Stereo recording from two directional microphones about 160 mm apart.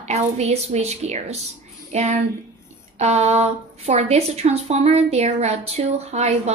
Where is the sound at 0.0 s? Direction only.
45° right (ahead or behind).